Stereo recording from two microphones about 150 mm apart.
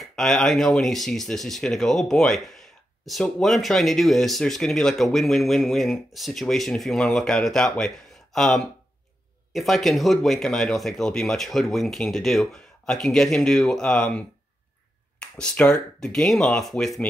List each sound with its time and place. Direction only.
0.0 s speech: 5° left (ahead or behind)